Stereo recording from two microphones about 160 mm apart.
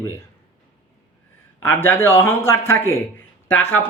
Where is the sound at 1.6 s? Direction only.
15° left (ahead or behind).